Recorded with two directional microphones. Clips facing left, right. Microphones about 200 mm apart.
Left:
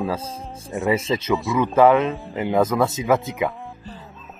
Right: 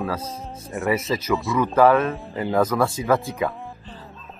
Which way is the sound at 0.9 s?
25° left (ahead or behind).